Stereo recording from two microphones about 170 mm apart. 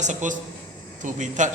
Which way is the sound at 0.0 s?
45° right (ahead or behind).